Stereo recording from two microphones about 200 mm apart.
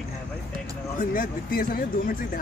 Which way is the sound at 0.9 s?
45° left (ahead or behind).